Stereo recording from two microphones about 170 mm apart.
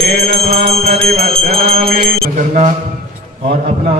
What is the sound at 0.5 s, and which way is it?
Music, 35° right (ahead or behind).